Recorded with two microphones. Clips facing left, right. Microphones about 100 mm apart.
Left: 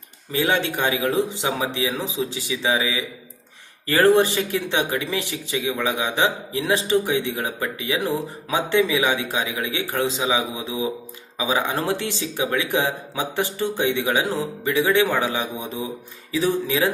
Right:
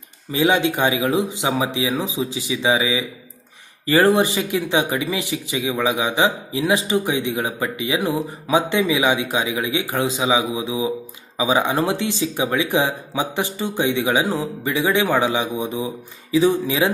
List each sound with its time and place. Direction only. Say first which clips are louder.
0.3 s speech: right 4 dB; 15° right (ahead or behind)